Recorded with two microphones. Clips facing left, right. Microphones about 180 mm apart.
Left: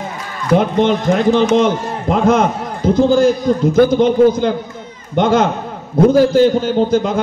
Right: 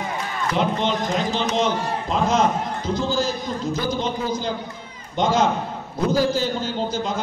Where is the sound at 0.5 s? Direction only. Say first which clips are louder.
Left 10 dB; 55° left (ahead or behind).